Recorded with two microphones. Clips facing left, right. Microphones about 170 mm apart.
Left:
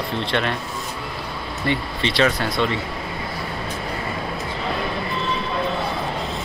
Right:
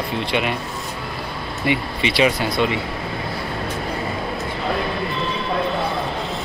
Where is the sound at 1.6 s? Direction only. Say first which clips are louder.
Right 2 dB; 10° right (ahead or behind).